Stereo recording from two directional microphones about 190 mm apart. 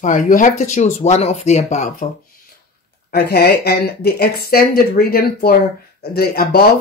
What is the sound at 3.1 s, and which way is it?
Speech, 55° left (ahead or behind).